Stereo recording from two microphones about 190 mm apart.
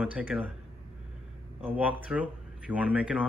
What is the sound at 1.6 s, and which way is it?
Speech, 10° right (ahead or behind).